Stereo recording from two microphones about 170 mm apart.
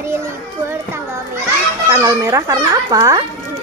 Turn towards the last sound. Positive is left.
turn(degrees=-20)  # may be behind; listen again after turning